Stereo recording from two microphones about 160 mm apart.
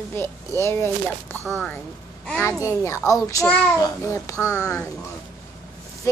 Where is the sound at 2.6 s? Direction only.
15° left (ahead or behind).